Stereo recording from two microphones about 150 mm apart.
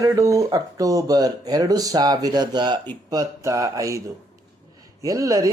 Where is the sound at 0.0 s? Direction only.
20° right (ahead or behind).